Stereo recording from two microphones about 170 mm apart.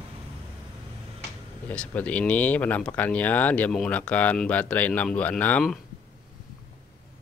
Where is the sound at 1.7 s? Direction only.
5° left (ahead or behind).